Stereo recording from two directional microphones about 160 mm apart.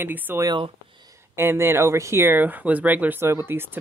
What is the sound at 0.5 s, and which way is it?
Speech, 25° right (ahead or behind).